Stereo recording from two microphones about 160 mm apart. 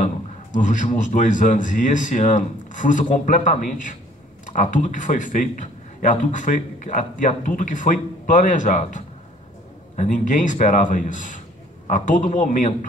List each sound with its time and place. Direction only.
0.0 s a man's voice: 50° left (ahead or behind)